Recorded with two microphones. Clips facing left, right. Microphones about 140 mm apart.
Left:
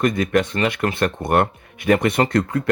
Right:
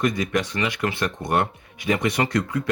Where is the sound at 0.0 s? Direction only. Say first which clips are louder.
Left 4 dB; 55° left (ahead or behind).